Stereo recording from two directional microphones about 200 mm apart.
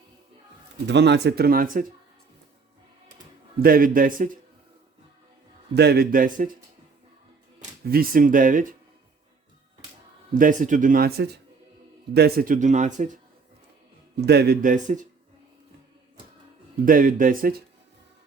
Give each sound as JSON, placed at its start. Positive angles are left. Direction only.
{"t": 0.9, "sound": "speech", "side_deg": -60}
{"t": 3.6, "sound": "speech", "side_deg": -45}
{"t": 5.7, "sound": "speech", "side_deg": -55}
{"t": 7.6, "sound": "speech", "side_deg": -45}
{"t": 10.3, "sound": "speech", "side_deg": -40}
{"t": 14.2, "sound": "speech", "side_deg": -55}
{"t": 16.8, "sound": "speech", "side_deg": -45}